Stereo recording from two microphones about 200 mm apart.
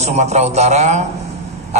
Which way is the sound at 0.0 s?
35° right (ahead or behind).